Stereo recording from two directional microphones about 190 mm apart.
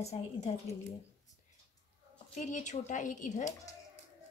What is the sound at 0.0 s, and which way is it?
Speech, 35° left (ahead or behind).